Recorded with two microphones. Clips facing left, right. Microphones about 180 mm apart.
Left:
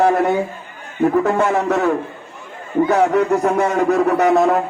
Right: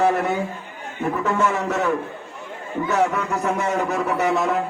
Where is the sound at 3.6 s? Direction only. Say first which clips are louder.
Left 7 dB; 60° left (ahead or behind).